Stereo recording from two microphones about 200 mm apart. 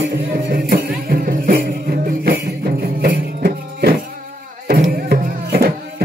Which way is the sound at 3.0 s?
50° right (ahead or behind).